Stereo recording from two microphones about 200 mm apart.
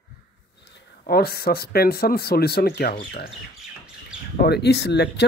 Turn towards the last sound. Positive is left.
turn(degrees=55)  # may be behind; listen again after turning